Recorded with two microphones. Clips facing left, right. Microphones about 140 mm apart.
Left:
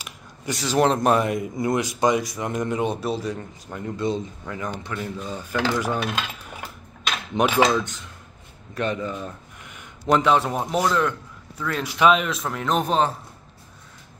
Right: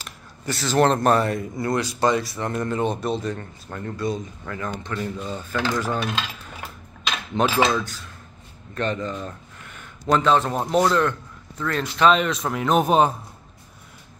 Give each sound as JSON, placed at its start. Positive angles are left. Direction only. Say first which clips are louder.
{"t": 0.0, "sound": "a man's voice", "louder": "even", "side_deg": 10}
{"t": 7.3, "sound": "a man's voice", "louder": "left 1 dB", "side_deg": 15}